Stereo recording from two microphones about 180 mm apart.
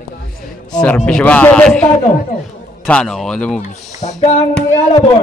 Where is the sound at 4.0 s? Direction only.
40° left (ahead or behind).